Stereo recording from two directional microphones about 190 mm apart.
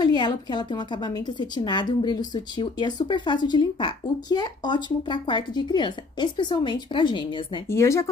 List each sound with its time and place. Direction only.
0.0 s a woman's voice: 20° left (ahead or behind)
7.6 s speech: 15° left (ahead or behind)